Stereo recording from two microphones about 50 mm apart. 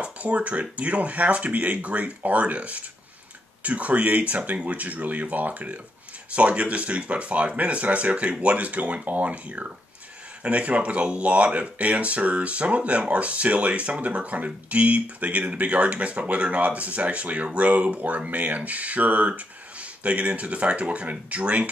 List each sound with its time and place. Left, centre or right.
0.0 s speech: right